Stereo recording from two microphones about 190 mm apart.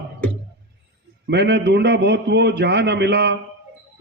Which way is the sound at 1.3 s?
65° right (ahead or behind).